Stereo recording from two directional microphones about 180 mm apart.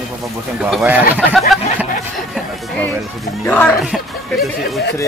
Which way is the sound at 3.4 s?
5° left (ahead or behind).